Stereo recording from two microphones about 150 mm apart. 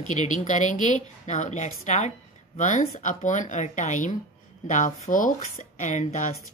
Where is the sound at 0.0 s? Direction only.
55° left (ahead or behind).